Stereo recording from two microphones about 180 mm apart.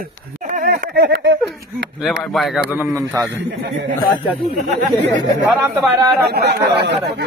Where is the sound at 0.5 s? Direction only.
50° right (ahead or behind).